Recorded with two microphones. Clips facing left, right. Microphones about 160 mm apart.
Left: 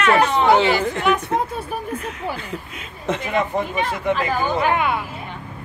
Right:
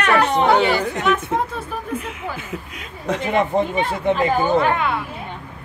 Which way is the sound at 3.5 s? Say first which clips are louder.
Right 3 dB; 25° right (ahead or behind).